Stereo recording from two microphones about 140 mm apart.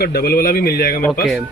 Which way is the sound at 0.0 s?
90° left.